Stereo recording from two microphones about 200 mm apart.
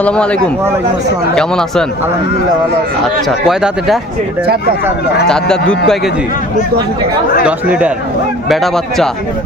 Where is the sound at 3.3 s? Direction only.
Centre (ahead or behind).